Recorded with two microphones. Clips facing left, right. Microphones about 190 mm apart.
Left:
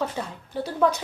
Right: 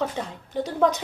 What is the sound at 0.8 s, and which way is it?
Speech, 15° right (ahead or behind).